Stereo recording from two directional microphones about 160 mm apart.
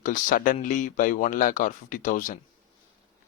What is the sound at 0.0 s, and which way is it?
Speech, 60° left (ahead or behind).